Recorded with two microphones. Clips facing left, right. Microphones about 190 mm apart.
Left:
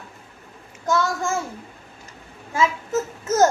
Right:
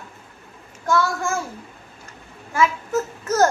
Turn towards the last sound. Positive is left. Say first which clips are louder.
# even
turn(degrees=20)  # may be behind; listen again after turning